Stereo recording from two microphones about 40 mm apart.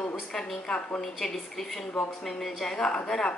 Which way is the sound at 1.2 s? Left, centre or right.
Centre.